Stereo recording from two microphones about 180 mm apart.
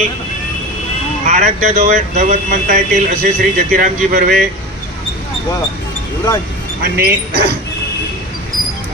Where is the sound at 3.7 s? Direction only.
45° right (ahead or behind).